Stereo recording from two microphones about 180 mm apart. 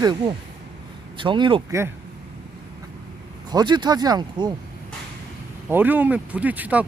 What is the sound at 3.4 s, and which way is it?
Speech, 25° right (ahead or behind).